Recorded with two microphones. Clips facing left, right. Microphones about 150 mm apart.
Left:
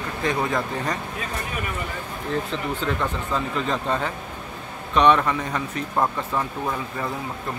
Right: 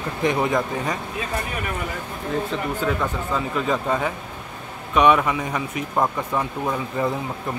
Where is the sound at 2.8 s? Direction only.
5° right (ahead or behind).